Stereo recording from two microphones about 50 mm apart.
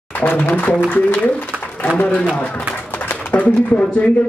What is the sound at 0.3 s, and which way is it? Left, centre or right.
A man's voice, left.